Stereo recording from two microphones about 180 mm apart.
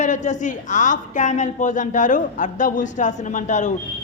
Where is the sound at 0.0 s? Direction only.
40° left (ahead or behind).